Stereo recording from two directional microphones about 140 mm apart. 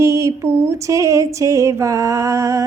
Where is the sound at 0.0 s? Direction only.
20° right (ahead or behind).